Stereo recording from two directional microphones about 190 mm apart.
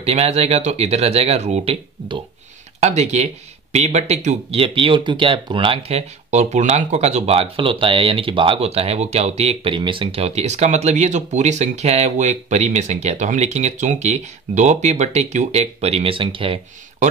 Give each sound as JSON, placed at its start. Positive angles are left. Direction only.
{"t": 0.0, "sound": "speech", "side_deg": -35}